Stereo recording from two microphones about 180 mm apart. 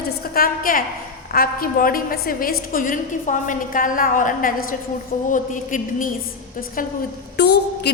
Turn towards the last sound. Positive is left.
turn(degrees=65)  # may be behind; listen again after turning